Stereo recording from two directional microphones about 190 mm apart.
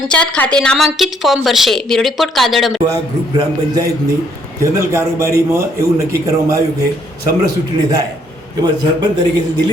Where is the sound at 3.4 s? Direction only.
20° right (ahead or behind).